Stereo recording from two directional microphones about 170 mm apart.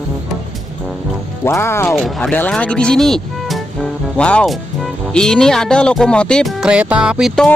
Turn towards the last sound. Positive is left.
turn(degrees=-5)  # may be behind; listen again after turning